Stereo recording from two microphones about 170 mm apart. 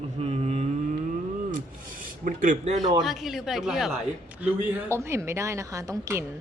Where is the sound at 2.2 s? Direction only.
50° right (ahead or behind).